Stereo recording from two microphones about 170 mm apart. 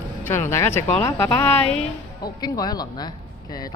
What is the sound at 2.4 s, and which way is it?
Speech, 25° left (ahead or behind).